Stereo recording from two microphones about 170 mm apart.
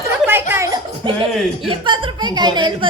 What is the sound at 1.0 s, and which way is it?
Speech, 30° right (ahead or behind).